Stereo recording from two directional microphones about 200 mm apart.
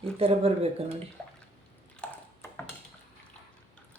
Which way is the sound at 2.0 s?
5° left (ahead or behind).